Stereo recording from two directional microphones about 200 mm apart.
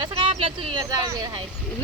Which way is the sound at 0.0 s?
25° right (ahead or behind).